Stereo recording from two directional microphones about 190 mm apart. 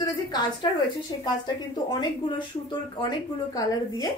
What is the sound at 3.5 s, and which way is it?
Speech, 20° left (ahead or behind).